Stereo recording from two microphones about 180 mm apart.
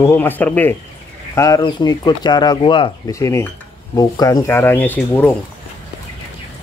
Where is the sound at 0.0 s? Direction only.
10° left (ahead or behind).